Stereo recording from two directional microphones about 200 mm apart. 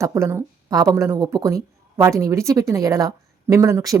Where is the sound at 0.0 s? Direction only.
15° right (ahead or behind).